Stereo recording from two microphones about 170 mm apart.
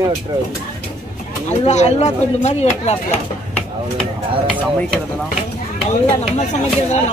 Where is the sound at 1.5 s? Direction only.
40° left (ahead or behind).